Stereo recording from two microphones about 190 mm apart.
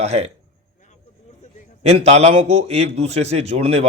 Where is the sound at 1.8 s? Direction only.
35° right (ahead or behind).